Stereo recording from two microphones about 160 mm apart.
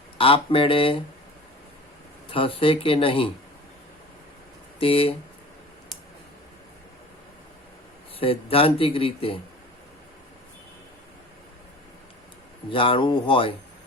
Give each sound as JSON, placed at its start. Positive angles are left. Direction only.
{"t": 0.2, "sound": "speech", "side_deg": 35}
{"t": 2.3, "sound": "speech", "side_deg": 35}
{"t": 4.8, "sound": "speech", "side_deg": 35}
{"t": 8.2, "sound": "speech", "side_deg": 35}
{"t": 12.7, "sound": "speech", "side_deg": 35}